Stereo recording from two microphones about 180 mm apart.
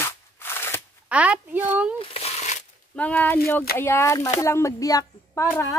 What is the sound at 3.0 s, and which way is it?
A child's voice, 10° left (ahead or behind).